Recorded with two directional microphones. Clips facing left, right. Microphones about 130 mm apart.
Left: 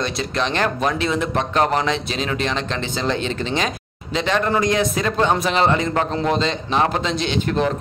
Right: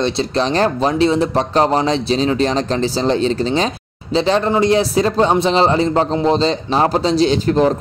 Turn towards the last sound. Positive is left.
turn(degrees=-35)  # may be behind; listen again after turning